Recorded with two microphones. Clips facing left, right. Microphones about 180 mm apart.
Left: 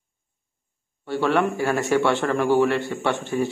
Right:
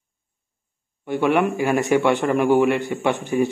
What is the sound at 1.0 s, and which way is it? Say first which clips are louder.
A man's voice: right 2 dB; 15° right (ahead or behind).